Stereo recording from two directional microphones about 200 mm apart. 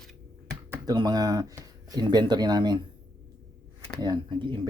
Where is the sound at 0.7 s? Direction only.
20° right (ahead or behind).